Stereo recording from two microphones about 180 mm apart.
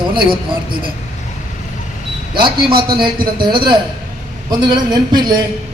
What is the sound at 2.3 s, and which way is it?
A man's voice, 25° right (ahead or behind).